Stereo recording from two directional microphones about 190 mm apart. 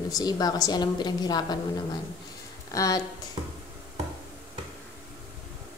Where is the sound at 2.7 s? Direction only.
20° left (ahead or behind).